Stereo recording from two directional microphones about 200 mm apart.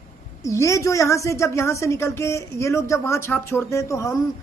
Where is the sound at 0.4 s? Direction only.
15° left (ahead or behind).